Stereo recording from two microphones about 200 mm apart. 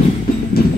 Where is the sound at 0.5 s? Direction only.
50° left (ahead or behind).